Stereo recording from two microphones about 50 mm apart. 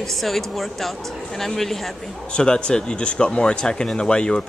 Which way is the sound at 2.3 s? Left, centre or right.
Centre.